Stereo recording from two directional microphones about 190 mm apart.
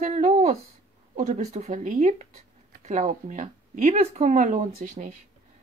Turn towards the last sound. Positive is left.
turn(degrees=-45)  # may be behind; listen again after turning